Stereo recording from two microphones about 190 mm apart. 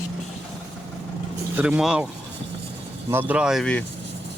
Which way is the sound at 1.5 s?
5° right (ahead or behind).